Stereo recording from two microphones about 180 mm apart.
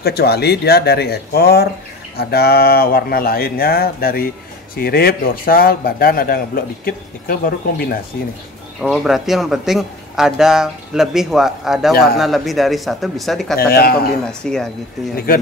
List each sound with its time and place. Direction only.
0.0 s speech: 65° left (ahead or behind)
8.8 s speech: centre (ahead or behind)
13.6 s speech: 60° left (ahead or behind)
14.4 s speech: 5° left (ahead or behind)
15.1 s speech: 55° left (ahead or behind)